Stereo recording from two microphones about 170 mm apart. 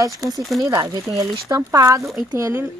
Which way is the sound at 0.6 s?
20° right (ahead or behind).